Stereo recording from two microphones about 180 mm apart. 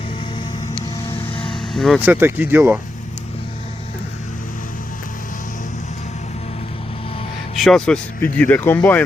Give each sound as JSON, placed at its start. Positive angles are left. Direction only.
{"t": 1.3, "sound": "vehicle", "side_deg": 30}
{"t": 1.5, "sound": "vehicle", "side_deg": 0}
{"t": 2.0, "sound": "speech", "side_deg": -10}
{"t": 7.5, "sound": "speech", "side_deg": 0}